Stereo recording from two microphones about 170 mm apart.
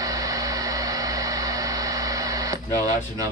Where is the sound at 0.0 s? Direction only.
20° right (ahead or behind).